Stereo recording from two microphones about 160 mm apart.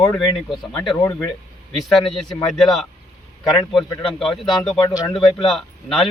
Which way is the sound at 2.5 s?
Centre (ahead or behind).